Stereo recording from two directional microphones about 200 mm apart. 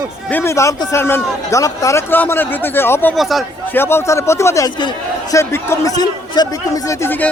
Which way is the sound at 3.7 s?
10° left (ahead or behind).